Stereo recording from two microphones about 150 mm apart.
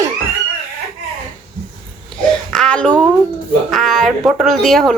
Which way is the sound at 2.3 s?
5° left (ahead or behind).